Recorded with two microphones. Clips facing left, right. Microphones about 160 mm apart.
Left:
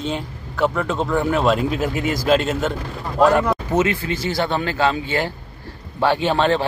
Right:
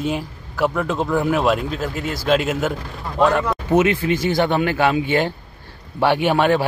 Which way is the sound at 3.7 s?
20° right (ahead or behind).